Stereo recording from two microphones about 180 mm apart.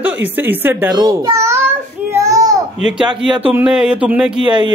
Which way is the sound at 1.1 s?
15° right (ahead or behind).